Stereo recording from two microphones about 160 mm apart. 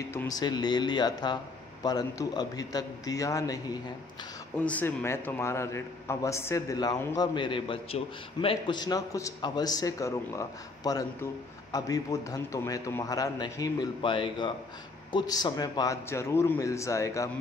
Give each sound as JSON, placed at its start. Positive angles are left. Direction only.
{"t": 0.1, "sound": "a man's voice", "side_deg": 20}
{"t": 4.6, "sound": "a man's voice", "side_deg": 10}
{"t": 7.3, "sound": "a man's voice", "side_deg": 30}